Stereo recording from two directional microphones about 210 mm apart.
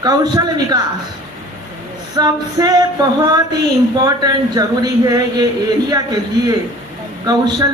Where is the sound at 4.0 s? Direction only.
20° right (ahead or behind).